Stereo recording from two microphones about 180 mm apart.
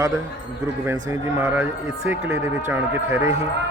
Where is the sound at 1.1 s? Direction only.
15° right (ahead or behind).